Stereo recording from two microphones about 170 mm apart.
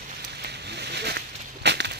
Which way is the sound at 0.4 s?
75° right (ahead or behind).